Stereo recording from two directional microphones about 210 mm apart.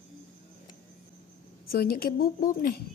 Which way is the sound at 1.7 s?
45° left (ahead or behind).